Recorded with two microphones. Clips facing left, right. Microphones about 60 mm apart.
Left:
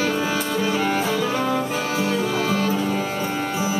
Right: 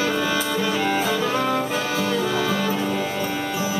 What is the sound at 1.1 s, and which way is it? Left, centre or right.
Music, right.